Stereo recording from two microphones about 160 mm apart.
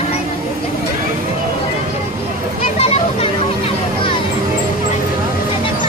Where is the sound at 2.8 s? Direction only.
40° left (ahead or behind).